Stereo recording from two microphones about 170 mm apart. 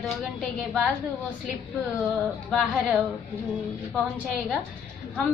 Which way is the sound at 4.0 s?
5° right (ahead or behind).